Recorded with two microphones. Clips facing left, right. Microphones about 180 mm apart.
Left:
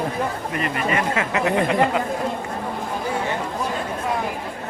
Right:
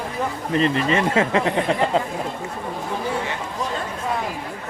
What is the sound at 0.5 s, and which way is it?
Speech, 30° right (ahead or behind).